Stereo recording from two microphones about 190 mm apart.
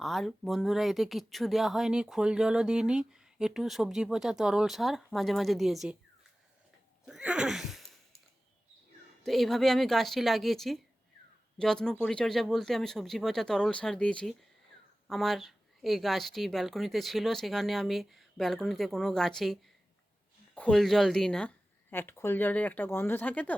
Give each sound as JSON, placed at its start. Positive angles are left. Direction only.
{"t": 0.0, "sound": "speech", "side_deg": 0}
{"t": 7.0, "sound": "a sound", "side_deg": -5}
{"t": 9.2, "sound": "speech", "side_deg": 0}
{"t": 20.6, "sound": "speech", "side_deg": 5}